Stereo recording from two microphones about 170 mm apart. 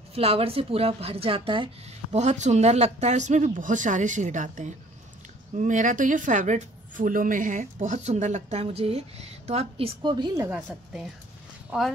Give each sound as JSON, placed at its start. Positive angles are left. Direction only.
{"t": 0.1, "sound": "speech", "side_deg": -35}
{"t": 2.1, "sound": "a woman's voice", "side_deg": -45}